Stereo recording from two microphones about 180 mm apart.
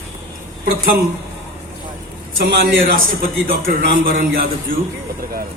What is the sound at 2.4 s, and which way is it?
A man's voice, 55° right (ahead or behind).